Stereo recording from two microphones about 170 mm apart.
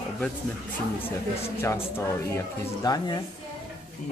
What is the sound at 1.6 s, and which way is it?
Speech, 15° left (ahead or behind).